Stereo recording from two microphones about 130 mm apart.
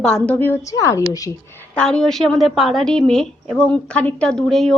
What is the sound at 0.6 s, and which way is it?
Speech, 25° left (ahead or behind).